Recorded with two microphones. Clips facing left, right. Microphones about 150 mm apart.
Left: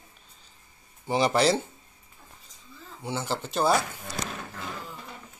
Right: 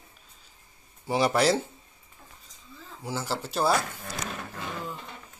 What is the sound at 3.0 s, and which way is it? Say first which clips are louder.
Speech: left 1 dB; centre (ahead or behind).